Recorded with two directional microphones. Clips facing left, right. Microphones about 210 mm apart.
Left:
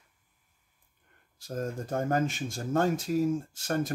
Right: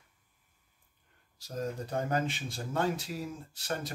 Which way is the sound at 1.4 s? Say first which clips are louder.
Left 2 dB; 50° left (ahead or behind).